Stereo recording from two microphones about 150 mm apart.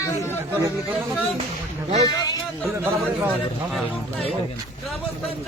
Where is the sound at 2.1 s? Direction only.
25° left (ahead or behind).